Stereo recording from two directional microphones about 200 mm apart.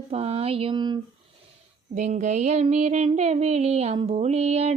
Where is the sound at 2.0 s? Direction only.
35° right (ahead or behind).